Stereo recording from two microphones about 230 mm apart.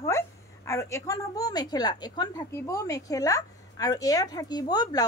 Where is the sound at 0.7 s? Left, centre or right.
Centre.